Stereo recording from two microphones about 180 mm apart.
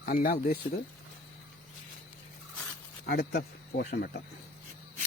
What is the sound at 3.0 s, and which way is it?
Speech, 60° left (ahead or behind).